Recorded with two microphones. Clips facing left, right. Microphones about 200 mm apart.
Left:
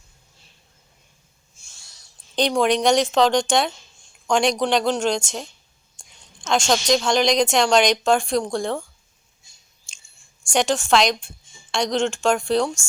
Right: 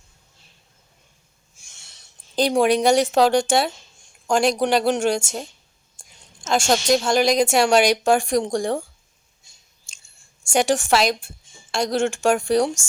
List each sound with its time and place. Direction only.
1.5 s a sound: 20° right (ahead or behind)
2.5 s a woman's voice: 10° right (ahead or behind)
9.9 s scissors: centre (ahead or behind)
10.5 s a woman's voice: 10° right (ahead or behind)